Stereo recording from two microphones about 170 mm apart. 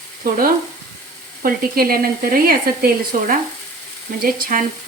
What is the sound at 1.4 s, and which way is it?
Speech, 60° right (ahead or behind).